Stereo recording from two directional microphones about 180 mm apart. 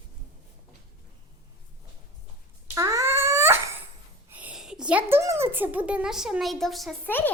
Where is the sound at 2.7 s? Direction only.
15° right (ahead or behind); by 6.9 s centre (ahead or behind).